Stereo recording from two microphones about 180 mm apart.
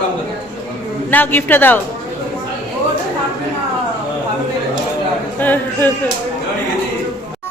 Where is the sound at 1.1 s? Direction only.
10° left (ahead or behind).